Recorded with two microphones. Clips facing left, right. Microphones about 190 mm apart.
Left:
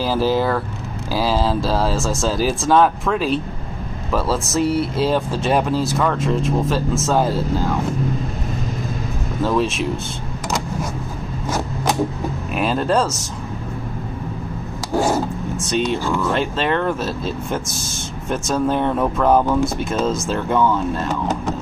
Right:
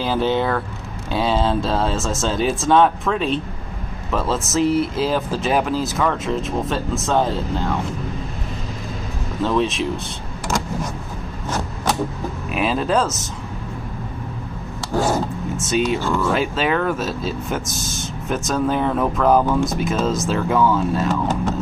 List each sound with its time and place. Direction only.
0.0 s speech: centre (ahead or behind)
9.4 s speech: 5° left (ahead or behind)
12.5 s speech: centre (ahead or behind)
15.7 s speech: 5° right (ahead or behind)